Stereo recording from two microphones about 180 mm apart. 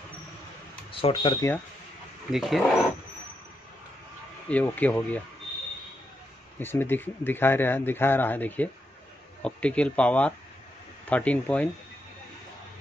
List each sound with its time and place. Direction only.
1.0 s speech: 25° left (ahead or behind)
2.3 s speech: centre (ahead or behind)
4.5 s speech: 10° left (ahead or behind)
6.6 s speech: 10° left (ahead or behind)